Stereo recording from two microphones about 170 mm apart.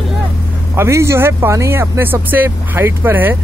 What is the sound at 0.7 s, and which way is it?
Speech, 15° right (ahead or behind).